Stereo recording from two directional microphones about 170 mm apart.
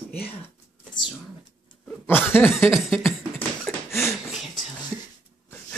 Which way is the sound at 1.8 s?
10° left (ahead or behind).